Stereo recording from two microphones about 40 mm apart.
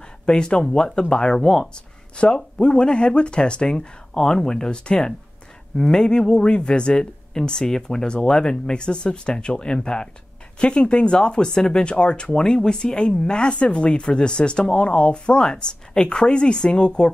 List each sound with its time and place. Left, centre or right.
0.2 s speech: left
2.1 s speech: left